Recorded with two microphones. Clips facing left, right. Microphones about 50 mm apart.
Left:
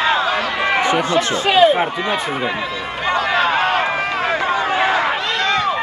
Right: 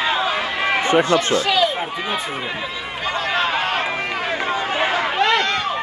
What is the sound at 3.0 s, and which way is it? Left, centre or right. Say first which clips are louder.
Run: left 4 dB; left.